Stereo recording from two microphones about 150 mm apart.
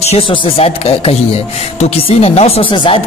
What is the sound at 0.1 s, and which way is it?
Speech, 40° left (ahead or behind).